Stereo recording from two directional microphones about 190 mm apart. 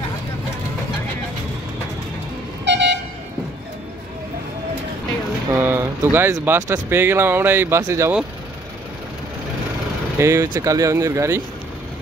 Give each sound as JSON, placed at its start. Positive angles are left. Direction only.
{"t": 2.6, "sound": "vehicle", "side_deg": -65}
{"t": 5.5, "sound": "speech", "side_deg": -15}
{"t": 10.1, "sound": "speech", "side_deg": -15}